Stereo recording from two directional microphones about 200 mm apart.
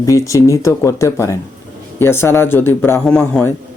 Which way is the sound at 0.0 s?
15° left (ahead or behind).